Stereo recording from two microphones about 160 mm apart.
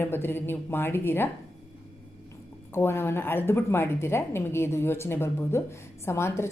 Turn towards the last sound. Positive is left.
turn(degrees=15)  # may be behind; listen again after turning